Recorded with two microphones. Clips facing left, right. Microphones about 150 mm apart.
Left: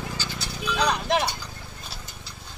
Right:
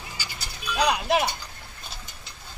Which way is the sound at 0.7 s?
10° right (ahead or behind).